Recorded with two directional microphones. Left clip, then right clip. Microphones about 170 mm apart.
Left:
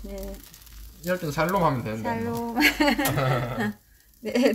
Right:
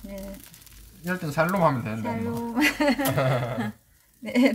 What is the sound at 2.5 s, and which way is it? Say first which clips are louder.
Speech: left 2 dB; 20° left (ahead or behind).